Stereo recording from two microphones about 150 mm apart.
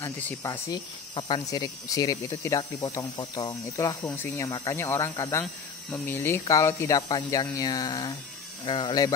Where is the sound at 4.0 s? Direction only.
10° left (ahead or behind).